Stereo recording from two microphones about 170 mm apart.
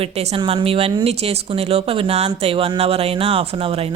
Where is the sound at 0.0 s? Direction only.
35° right (ahead or behind).